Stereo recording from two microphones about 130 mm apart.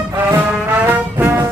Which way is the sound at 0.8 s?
15° right (ahead or behind).